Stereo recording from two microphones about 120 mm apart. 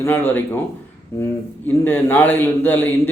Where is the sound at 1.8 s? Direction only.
15° left (ahead or behind).